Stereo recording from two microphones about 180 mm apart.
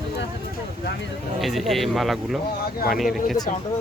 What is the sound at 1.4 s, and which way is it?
Speech, centre (ahead or behind).